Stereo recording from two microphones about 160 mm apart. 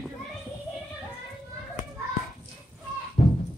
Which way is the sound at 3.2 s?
50° left (ahead or behind).